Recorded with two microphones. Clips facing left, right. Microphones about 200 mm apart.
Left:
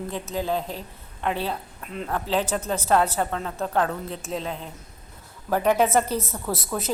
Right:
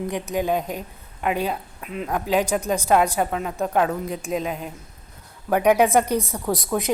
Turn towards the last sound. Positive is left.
turn(degrees=-15)  # may be behind; listen again after turning